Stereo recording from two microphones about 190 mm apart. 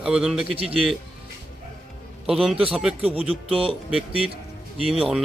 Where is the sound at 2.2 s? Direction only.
Centre (ahead or behind).